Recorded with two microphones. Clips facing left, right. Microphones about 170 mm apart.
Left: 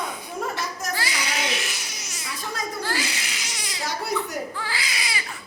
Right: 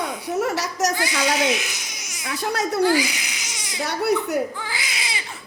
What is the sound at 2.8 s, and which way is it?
Babbling, 15° right (ahead or behind).